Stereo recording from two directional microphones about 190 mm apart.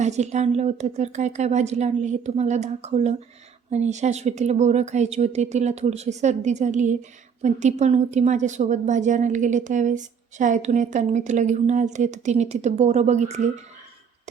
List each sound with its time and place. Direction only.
0.0 s a woman's voice: 35° right (ahead or behind)